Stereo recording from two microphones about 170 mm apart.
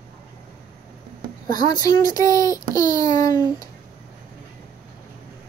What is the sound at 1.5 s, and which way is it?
A child's voice, 20° left (ahead or behind).